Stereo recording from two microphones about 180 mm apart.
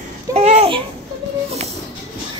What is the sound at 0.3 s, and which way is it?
Babbling, 35° right (ahead or behind).